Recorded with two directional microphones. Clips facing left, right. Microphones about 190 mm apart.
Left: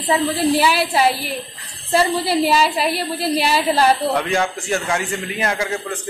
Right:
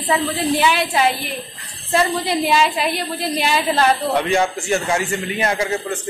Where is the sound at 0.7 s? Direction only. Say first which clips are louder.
Left 1 dB; 35° left (ahead or behind).